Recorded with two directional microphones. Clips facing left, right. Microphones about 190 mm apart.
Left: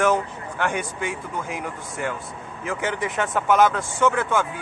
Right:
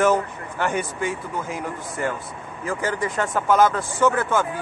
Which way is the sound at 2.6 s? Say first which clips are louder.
Right 1 dB; centre (ahead or behind).